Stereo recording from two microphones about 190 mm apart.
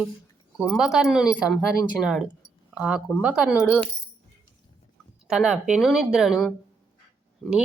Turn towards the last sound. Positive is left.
turn(degrees=-5)  # may be behind; listen again after turning